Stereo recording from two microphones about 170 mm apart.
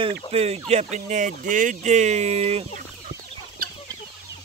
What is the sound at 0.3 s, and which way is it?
Speech, 40° right (ahead or behind).